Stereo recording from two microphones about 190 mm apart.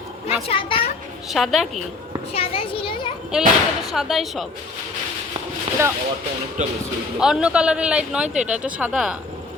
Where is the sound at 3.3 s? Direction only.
5° right (ahead or behind).